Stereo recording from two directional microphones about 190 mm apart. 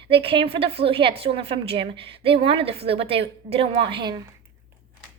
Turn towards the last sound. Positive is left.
turn(degrees=-25)  # may be behind; listen again after turning